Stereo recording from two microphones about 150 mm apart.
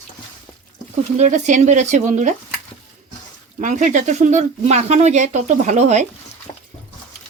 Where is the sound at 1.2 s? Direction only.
55° right (ahead or behind).